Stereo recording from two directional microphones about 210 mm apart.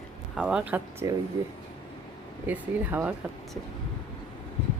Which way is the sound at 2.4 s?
10° right (ahead or behind).